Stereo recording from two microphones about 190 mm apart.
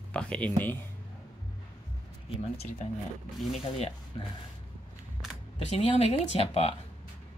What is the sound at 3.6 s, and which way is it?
Speech, 35° left (ahead or behind).